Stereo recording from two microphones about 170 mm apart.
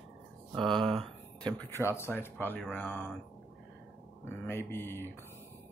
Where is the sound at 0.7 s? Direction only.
30° right (ahead or behind).